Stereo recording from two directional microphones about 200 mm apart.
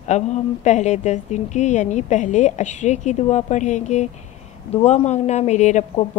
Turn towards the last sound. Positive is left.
turn(degrees=35)  # may be behind; listen again after turning